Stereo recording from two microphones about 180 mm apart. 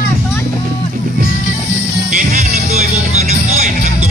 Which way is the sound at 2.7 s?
40° right (ahead or behind).